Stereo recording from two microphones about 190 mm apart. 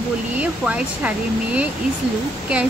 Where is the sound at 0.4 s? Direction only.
5° right (ahead or behind).